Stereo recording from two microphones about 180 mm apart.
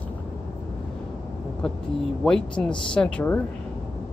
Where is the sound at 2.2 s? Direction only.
5° left (ahead or behind).